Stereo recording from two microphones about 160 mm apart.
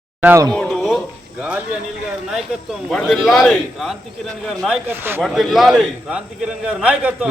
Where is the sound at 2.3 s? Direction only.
Centre (ahead or behind).